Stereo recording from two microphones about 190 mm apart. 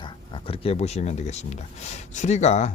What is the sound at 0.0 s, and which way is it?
Speech, 30° left (ahead or behind).